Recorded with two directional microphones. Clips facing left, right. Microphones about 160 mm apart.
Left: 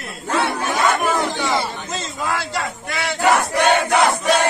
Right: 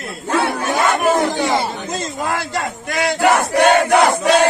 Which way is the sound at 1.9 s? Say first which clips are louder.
Right 3 dB; 45° right (ahead or behind).